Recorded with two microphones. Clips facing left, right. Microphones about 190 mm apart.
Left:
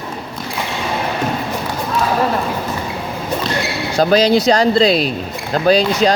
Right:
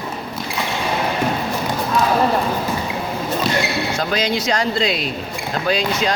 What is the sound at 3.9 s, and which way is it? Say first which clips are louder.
Speech: left 13 dB; 35° left (ahead or behind).